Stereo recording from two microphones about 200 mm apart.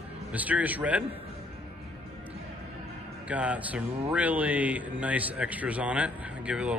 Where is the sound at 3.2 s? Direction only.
5° right (ahead or behind).